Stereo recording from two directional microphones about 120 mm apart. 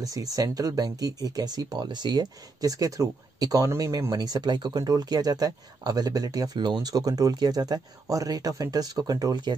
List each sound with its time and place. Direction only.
0.0 s speech: 30° right (ahead or behind)